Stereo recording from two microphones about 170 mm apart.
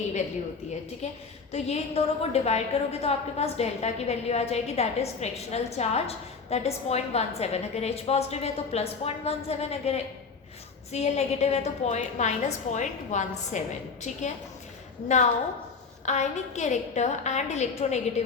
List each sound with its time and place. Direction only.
1.0 s a woman's voice: 40° left (ahead or behind)
16.0 s a woman's voice: 40° left (ahead or behind)